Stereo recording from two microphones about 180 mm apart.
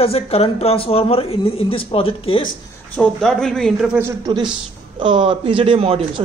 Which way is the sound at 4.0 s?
20° right (ahead or behind).